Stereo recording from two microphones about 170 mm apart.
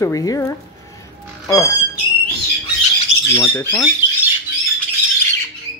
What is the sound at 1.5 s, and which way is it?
Speech, 20° left (ahead or behind).